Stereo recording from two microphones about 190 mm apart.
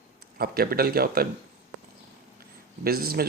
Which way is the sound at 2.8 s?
55° right (ahead or behind).